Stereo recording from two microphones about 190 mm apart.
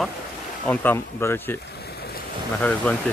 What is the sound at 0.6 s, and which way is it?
Speech, 10° left (ahead or behind).